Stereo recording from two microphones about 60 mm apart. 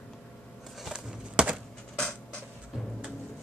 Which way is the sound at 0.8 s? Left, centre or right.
Centre.